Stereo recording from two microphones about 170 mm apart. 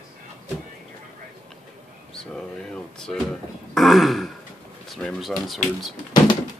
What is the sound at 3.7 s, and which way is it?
Throat clearing, centre (ahead or behind).